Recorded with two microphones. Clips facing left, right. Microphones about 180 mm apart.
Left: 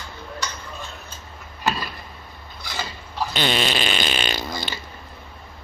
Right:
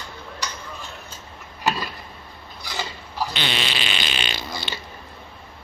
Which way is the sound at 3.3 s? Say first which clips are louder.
Left 5 dB; 45° left (ahead or behind).